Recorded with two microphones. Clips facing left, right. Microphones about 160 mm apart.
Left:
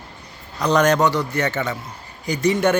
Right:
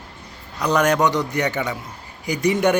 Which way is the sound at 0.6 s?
10° right (ahead or behind).